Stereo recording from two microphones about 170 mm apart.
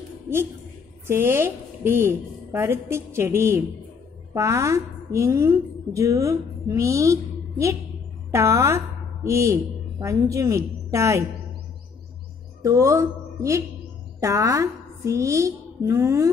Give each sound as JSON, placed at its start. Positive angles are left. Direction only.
{"t": 1.0, "sound": "a woman's voice", "side_deg": -15}
{"t": 12.6, "sound": "a woman's voice", "side_deg": -20}